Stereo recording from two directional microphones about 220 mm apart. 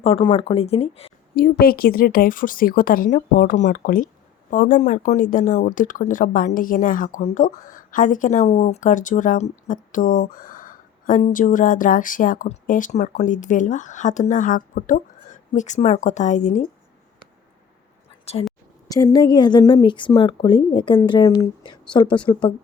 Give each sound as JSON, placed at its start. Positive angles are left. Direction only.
{"t": 0.0, "sound": "a woman's voice", "side_deg": 25}
{"t": 1.4, "sound": "speech", "side_deg": 45}
{"t": 18.3, "sound": "speech", "side_deg": 30}
{"t": 18.9, "sound": "a woman's voice", "side_deg": 15}